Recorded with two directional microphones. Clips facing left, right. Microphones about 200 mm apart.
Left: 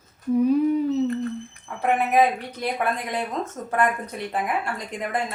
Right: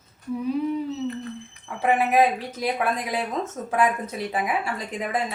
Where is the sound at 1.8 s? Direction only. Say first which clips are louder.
Even; 5° right (ahead or behind).